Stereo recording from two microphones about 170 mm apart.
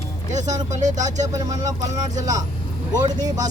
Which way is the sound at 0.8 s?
45° right (ahead or behind).